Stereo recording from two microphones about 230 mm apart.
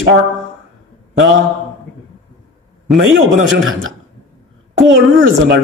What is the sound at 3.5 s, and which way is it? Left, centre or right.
Speech, right.